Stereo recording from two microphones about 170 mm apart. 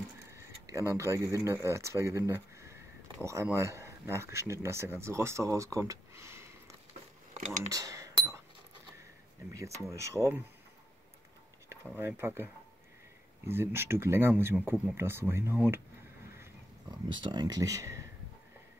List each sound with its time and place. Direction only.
0.3 s speech: 15° right (ahead or behind)
7.7 s a sound: 20° right (ahead or behind)
9.5 s speech: 20° right (ahead or behind)
12.0 s speech: 15° right (ahead or behind)
13.5 s speech: 15° right (ahead or behind)
17.1 s speech: 25° right (ahead or behind)